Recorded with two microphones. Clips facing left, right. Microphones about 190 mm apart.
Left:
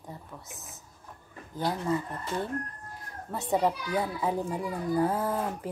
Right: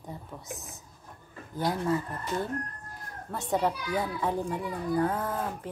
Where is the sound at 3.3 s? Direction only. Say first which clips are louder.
Left 1 dB; 5° left (ahead or behind).